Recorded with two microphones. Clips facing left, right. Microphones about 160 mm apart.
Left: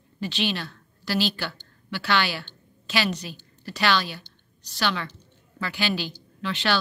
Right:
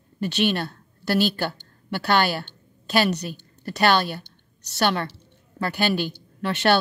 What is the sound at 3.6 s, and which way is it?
Speech, 50° right (ahead or behind).